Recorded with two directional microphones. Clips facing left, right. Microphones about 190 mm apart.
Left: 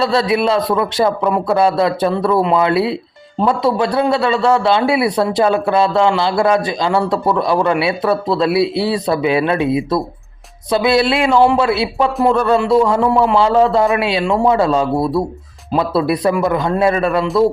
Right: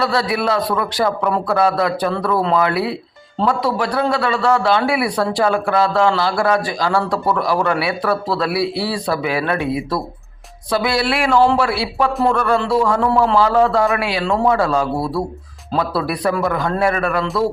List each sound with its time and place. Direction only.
0.0 s a man's voice: 25° left (ahead or behind)